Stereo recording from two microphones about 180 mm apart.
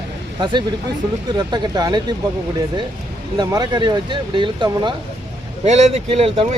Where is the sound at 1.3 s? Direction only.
25° right (ahead or behind).